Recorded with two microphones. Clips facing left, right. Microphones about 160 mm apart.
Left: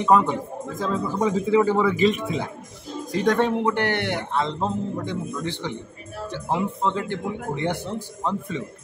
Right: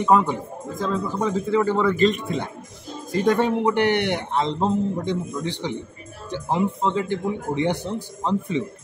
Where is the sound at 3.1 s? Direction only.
5° right (ahead or behind).